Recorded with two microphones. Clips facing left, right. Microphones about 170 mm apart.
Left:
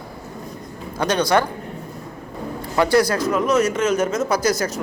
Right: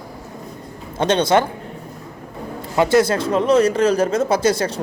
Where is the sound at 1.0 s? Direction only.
25° right (ahead or behind).